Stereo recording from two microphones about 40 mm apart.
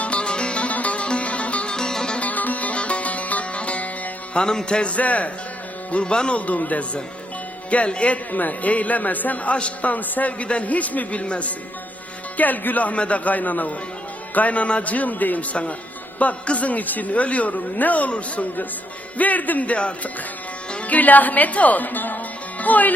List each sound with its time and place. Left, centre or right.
0.0 s music: left
1.7 s music: centre
2.1 s music: left
4.4 s music: centre
4.9 s a man's voice: left
5.9 s a man's voice: left
9.9 s a man's voice: left
12.4 s a woman's voice: left